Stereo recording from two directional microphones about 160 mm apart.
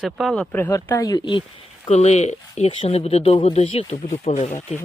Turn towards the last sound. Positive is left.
turn(degrees=45)  # may be behind; listen again after turning